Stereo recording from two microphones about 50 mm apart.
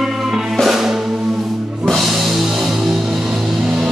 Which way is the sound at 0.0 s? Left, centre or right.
Centre.